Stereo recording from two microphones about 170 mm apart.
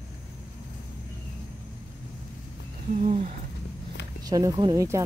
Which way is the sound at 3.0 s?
45° right (ahead or behind).